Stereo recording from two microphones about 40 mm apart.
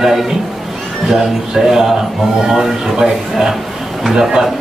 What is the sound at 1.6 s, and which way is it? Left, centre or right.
A man's voice, centre.